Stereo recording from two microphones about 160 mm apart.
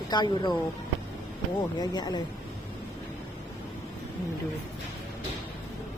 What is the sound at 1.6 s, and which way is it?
Speech, 25° left (ahead or behind).